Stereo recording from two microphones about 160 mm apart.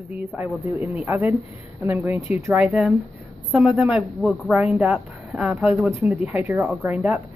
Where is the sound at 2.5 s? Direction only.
5° right (ahead or behind).